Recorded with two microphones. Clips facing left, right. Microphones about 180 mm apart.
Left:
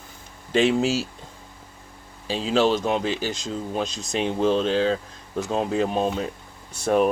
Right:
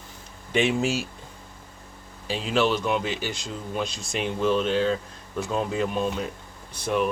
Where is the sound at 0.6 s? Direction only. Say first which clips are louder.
Left 3 dB; 35° left (ahead or behind).